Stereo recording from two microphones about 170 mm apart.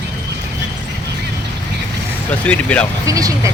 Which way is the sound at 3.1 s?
20° right (ahead or behind).